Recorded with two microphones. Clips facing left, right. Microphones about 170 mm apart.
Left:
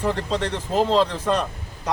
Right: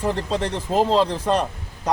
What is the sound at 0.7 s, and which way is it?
Speech, 5° right (ahead or behind).